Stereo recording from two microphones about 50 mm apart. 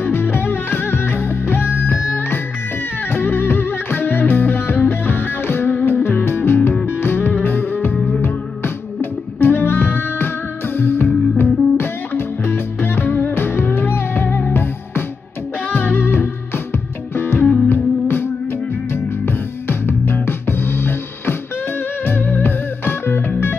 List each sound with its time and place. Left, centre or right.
0.0 s music: left